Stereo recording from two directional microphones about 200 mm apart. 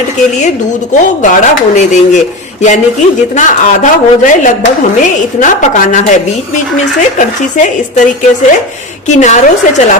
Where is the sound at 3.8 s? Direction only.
40° left (ahead or behind).